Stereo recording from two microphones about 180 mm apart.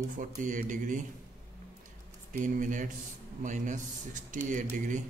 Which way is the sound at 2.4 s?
45° right (ahead or behind).